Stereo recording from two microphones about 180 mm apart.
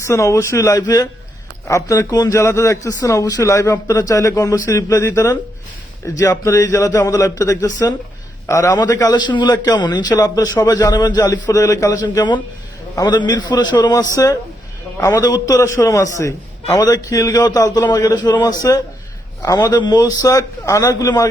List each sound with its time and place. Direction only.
0.0 s a man's voice: 15° left (ahead or behind)